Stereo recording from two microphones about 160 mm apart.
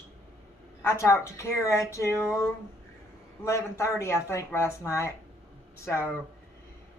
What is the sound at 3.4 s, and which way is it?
Speech, 20° left (ahead or behind).